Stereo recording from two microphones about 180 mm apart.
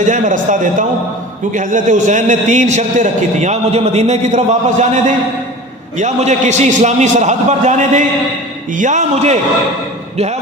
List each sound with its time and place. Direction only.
0.0 s a man's voice: 45° right (ahead or behind)